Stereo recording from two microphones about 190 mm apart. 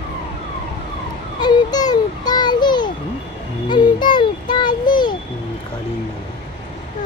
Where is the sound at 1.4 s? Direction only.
20° left (ahead or behind).